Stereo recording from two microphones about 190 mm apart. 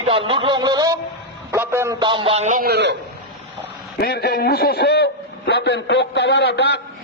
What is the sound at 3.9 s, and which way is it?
A man's voice, 60° left (ahead or behind).